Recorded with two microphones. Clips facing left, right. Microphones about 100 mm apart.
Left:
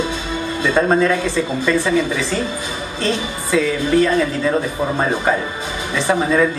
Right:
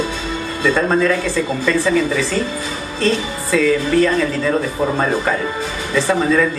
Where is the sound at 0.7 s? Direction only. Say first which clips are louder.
Even; 20° left (ahead or behind).